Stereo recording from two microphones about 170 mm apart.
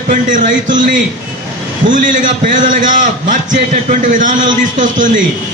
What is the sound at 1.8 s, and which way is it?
A man's voice, 50° right (ahead or behind).